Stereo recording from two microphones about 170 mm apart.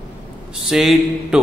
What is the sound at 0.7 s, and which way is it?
Speech, centre (ahead or behind).